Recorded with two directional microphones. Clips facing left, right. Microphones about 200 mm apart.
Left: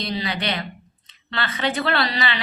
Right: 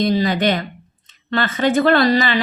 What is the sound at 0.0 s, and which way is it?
A woman's voice, 45° right (ahead or behind).